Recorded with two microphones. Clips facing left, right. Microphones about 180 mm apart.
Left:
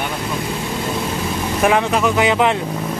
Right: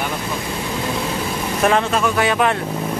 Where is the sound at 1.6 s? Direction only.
15° left (ahead or behind).